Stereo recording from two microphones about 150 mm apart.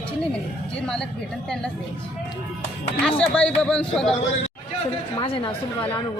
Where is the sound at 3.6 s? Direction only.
5° left (ahead or behind).